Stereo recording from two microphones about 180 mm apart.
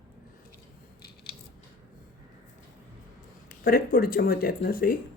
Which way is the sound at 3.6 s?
55° left (ahead or behind).